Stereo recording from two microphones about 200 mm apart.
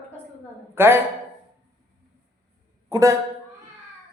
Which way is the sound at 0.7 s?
10° right (ahead or behind).